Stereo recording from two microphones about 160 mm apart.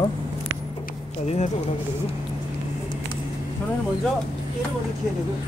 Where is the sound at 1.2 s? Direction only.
45° left (ahead or behind).